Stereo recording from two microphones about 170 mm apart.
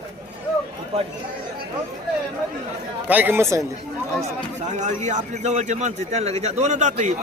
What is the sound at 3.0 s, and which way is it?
Speech, 10° right (ahead or behind).